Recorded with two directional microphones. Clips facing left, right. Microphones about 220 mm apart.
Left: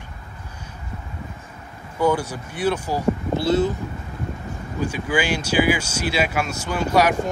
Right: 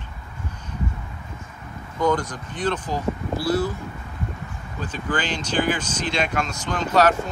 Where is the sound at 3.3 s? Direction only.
25° left (ahead or behind).